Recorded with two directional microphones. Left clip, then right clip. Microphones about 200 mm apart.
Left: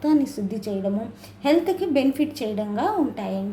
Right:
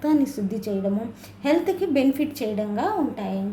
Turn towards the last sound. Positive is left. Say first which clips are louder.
# left 1 dB
turn(degrees=10)  # may be behind; listen again after turning